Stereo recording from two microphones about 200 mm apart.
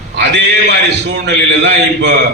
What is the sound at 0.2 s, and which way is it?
A man's voice, 60° right (ahead or behind).